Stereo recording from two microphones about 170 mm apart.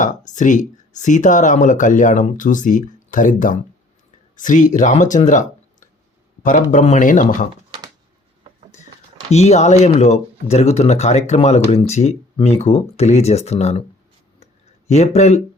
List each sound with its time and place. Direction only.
0.3 s speech: 45° left (ahead or behind)
9.3 s speech: 40° left (ahead or behind)
14.8 s speech: 40° left (ahead or behind)